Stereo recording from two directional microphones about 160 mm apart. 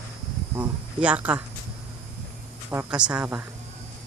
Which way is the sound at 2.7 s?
5° right (ahead or behind).